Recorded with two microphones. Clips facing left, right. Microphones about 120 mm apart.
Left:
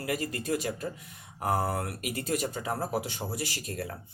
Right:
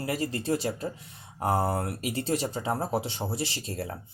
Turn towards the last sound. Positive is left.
turn(degrees=-30)  # may be behind; listen again after turning